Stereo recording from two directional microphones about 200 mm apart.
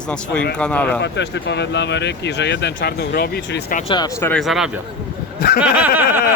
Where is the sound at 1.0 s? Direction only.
60° left (ahead or behind).